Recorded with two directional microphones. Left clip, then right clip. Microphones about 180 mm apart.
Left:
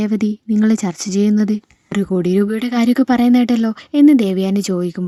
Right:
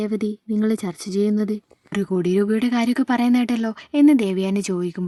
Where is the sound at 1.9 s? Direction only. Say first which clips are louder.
Left 4 dB; 30° left (ahead or behind).